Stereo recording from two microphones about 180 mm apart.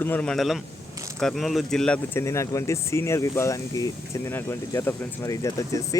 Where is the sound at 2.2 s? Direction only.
15° left (ahead or behind).